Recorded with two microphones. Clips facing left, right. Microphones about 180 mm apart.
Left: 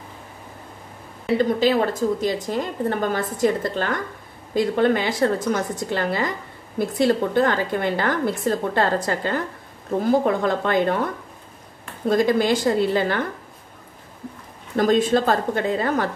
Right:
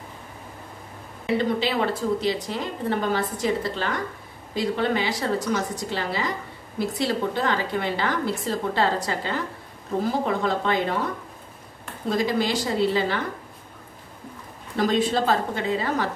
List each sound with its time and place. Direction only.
1.4 s a woman's voice: 45° left (ahead or behind)
12.1 s a woman's voice: 50° left (ahead or behind)
14.8 s a woman's voice: 50° left (ahead or behind)